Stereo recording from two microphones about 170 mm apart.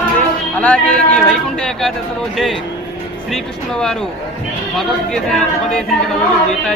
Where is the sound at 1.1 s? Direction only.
5° left (ahead or behind).